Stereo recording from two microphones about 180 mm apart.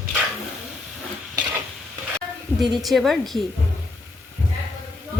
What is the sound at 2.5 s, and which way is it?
Speech, centre (ahead or behind).